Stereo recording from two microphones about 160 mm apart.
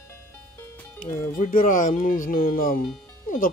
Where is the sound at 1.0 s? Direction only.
55° left (ahead or behind).